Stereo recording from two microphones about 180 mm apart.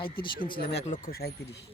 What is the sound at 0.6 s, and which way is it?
Speech, 55° left (ahead or behind).